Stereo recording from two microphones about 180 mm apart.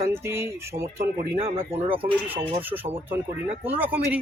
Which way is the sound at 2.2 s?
10° right (ahead or behind).